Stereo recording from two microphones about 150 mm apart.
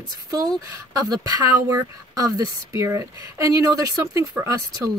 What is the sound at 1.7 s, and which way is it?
Speech, 20° right (ahead or behind).